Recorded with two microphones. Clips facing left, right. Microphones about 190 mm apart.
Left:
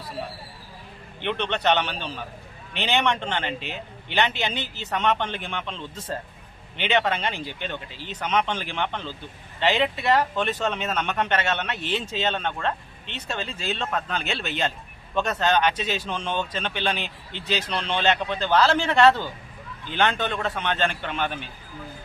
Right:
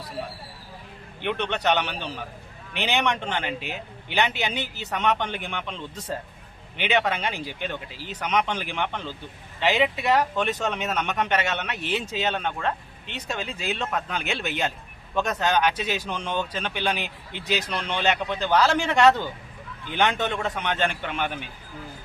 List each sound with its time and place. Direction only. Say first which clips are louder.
1.2 s a man's voice: left 1 dB; 10° right (ahead or behind)